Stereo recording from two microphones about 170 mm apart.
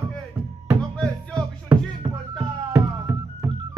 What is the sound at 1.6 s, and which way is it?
Music, 15° right (ahead or behind).